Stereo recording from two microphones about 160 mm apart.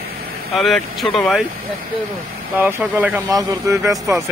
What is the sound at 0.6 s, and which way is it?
Speech, centre (ahead or behind).